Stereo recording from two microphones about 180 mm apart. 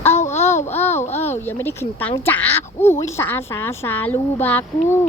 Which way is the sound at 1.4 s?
10° left (ahead or behind).